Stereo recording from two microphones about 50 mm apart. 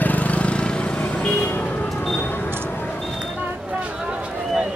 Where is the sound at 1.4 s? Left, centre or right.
Left.